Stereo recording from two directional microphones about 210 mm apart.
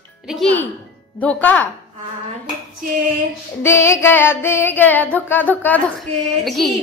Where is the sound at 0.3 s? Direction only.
5° left (ahead or behind).